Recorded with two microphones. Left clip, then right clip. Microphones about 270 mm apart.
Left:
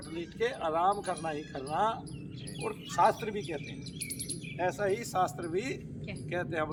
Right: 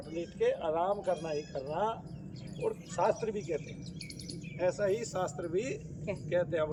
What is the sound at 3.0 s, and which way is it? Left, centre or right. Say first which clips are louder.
Speech: left 1 dB; left.